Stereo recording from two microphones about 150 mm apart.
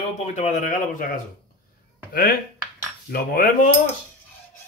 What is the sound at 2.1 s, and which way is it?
Speech, 90° left.